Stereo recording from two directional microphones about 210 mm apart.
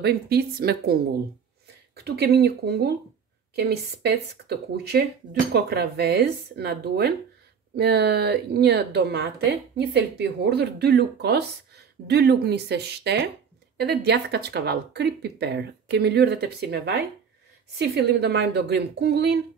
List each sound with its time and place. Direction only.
0.0 s speech: 50° right (ahead or behind)
2.0 s speech: 50° right (ahead or behind)